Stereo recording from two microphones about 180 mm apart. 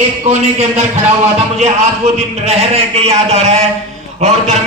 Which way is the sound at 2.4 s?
35° right (ahead or behind).